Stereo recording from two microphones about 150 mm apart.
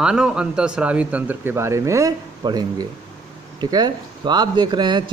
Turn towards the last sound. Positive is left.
turn(degrees=-30)  # may be behind; listen again after turning